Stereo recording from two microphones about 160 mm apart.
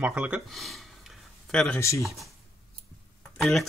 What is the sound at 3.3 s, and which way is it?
Speech, centre (ahead or behind).